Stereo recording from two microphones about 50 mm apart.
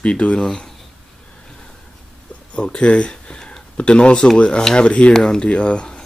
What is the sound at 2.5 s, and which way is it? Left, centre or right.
Speech, left.